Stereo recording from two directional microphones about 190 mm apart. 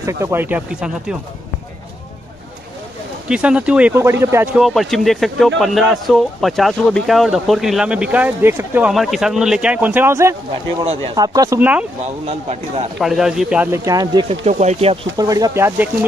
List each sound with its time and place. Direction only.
0.2 s speech: 10° right (ahead or behind)
3.3 s speech: 5° right (ahead or behind)
4.6 s speech: centre (ahead or behind)
10.8 s speech: 30° right (ahead or behind)
11.1 s speech: 20° right (ahead or behind)
12.0 s speech: 35° right (ahead or behind)
13.0 s speech: centre (ahead or behind); by 14.2 s 20° right (ahead or behind)
14.4 s speech: 35° right (ahead or behind)
15.1 s speech: 20° right (ahead or behind)